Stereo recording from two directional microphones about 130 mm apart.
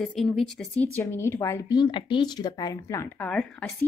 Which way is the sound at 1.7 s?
40° left (ahead or behind).